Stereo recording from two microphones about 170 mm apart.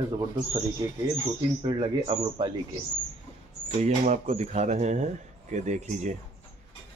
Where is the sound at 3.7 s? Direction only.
40° right (ahead or behind).